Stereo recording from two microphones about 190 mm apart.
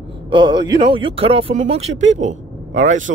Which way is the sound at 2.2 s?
80° right.